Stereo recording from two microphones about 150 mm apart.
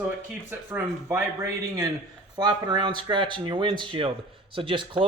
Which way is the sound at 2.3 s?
30° right (ahead or behind).